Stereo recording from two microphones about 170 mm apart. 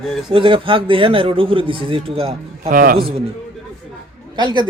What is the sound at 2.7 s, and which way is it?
Speech, 60° right (ahead or behind).